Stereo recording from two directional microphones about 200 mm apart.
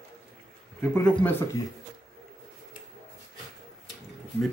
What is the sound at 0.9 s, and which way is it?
Speech, 15° left (ahead or behind).